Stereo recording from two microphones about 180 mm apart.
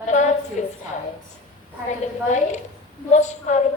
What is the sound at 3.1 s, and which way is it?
Speech, 40° left (ahead or behind).